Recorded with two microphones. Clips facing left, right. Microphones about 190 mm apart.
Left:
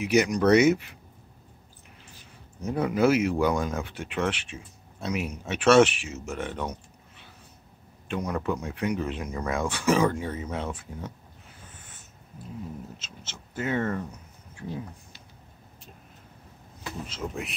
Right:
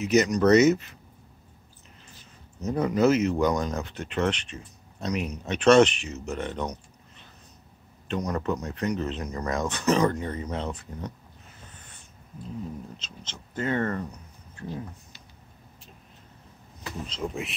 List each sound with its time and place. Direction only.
0.0 s speech: 10° left (ahead or behind)
2.6 s speech: 10° left (ahead or behind)
13.0 s speech: 10° left (ahead or behind)
14.5 s a sound: 10° left (ahead or behind)
17.1 s speech: centre (ahead or behind)